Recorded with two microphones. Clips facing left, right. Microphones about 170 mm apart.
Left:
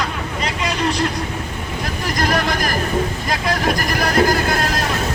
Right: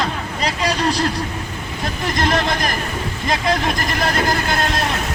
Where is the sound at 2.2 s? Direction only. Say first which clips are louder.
Even; 25° right (ahead or behind).